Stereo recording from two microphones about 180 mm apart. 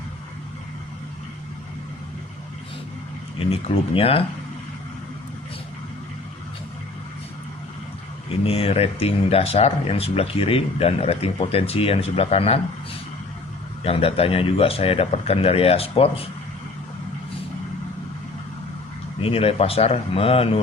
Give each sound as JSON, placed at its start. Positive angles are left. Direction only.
{"t": 3.5, "sound": "speech", "side_deg": 35}
{"t": 8.4, "sound": "speech", "side_deg": 35}
{"t": 13.8, "sound": "speech", "side_deg": 30}
{"t": 19.2, "sound": "speech", "side_deg": 30}